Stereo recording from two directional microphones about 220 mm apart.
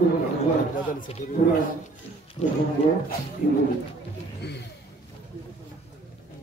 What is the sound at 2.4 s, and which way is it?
Speech, 30° left (ahead or behind).